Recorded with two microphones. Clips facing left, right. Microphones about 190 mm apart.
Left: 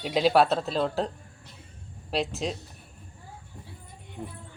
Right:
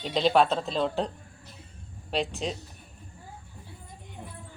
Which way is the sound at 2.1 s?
Centre (ahead or behind).